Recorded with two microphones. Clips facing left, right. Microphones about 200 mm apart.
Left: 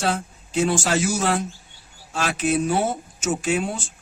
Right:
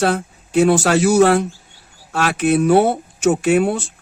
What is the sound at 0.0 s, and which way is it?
Speech, 60° right (ahead or behind).